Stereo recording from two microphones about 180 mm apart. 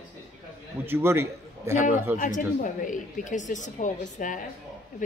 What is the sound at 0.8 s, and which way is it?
A man's voice, 15° right (ahead or behind).